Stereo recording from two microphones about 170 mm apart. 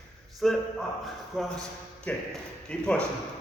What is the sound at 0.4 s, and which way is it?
A man's voice, centre (ahead or behind).